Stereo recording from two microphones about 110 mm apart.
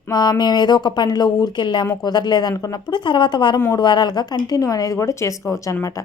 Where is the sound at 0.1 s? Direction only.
40° left (ahead or behind).